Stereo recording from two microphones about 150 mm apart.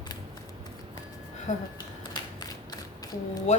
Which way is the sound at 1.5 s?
55° left (ahead or behind).